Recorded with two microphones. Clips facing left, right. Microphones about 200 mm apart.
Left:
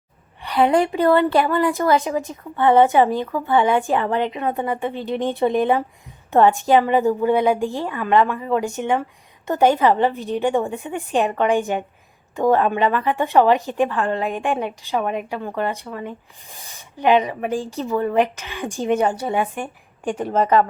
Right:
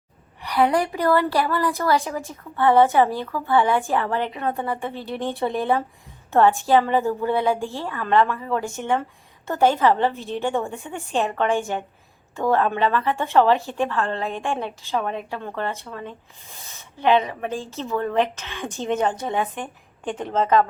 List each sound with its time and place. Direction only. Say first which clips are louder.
0.4 s a woman's voice: left 3 dB; 25° left (ahead or behind)